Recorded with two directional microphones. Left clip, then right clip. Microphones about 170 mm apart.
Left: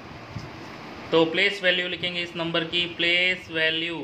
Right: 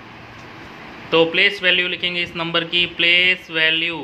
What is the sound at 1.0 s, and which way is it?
Speech, 20° right (ahead or behind).